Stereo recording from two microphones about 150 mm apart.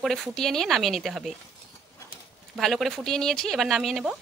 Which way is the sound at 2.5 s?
Centre (ahead or behind).